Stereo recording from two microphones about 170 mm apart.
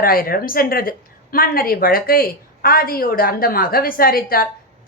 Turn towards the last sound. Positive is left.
turn(degrees=60)  # may be behind; listen again after turning